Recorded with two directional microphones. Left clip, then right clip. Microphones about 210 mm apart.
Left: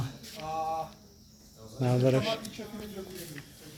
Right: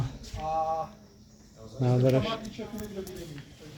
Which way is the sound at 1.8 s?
Centre (ahead or behind).